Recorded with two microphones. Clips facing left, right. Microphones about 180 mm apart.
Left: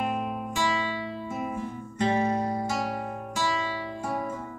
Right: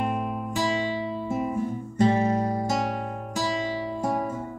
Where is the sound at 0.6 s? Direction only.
40° right (ahead or behind).